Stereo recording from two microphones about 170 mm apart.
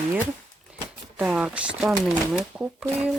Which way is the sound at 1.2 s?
5° right (ahead or behind).